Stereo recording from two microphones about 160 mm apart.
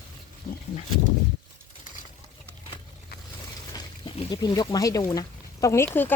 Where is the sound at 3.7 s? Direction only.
30° left (ahead or behind).